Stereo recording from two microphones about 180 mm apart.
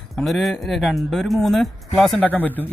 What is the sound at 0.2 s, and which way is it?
Speech, centre (ahead or behind).